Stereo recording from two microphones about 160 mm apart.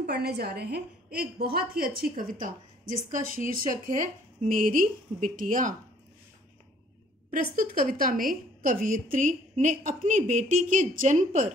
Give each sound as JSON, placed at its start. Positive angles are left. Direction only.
{"t": 0.0, "sound": "a woman's voice", "side_deg": -90}
{"t": 1.4, "sound": "a woman's voice", "side_deg": -70}
{"t": 7.5, "sound": "a woman's voice", "side_deg": -60}